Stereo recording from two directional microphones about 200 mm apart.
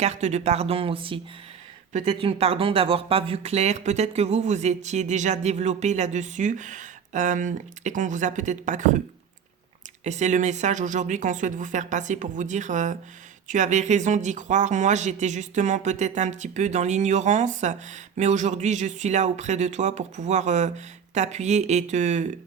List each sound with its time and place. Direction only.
0.0 s speech: 35° right (ahead or behind)
10.0 s speech: 35° right (ahead or behind)